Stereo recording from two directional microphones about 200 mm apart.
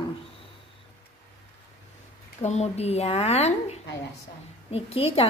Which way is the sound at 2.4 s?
35° left (ahead or behind).